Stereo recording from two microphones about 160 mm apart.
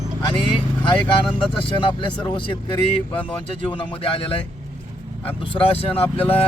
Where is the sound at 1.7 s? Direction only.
30° left (ahead or behind).